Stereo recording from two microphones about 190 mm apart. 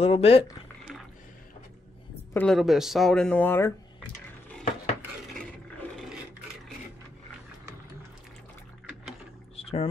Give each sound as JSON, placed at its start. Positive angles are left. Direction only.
{"t": 0.0, "sound": "speech", "side_deg": 30}
{"t": 2.3, "sound": "speech", "side_deg": 5}
{"t": 9.6, "sound": "a sound", "side_deg": 30}